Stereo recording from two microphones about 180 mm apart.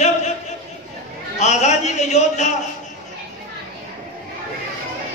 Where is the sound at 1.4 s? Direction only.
40° left (ahead or behind).